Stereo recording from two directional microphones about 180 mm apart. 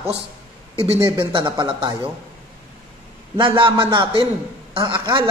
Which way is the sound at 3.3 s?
30° right (ahead or behind).